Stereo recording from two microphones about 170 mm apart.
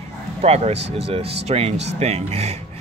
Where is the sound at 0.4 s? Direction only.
40° right (ahead or behind).